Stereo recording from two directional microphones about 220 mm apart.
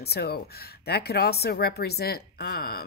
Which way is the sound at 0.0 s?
45° left (ahead or behind).